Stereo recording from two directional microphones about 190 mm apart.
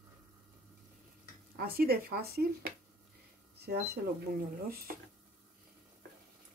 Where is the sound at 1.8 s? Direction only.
55° right (ahead or behind).